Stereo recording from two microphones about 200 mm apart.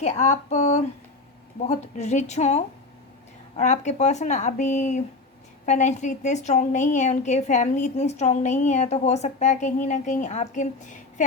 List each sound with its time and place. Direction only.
0.0 s a woman's voice: 35° left (ahead or behind)